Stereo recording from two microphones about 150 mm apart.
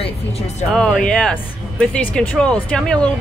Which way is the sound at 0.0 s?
45° left (ahead or behind).